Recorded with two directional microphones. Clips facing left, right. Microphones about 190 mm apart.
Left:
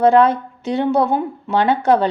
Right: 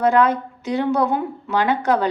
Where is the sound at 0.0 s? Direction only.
30° left (ahead or behind).